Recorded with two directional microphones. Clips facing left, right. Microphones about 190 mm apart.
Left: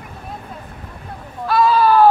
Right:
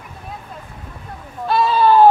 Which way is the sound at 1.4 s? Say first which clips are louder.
Left 1 dB; 25° right (ahead or behind).